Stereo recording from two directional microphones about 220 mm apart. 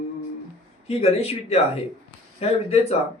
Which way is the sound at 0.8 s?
25° left (ahead or behind).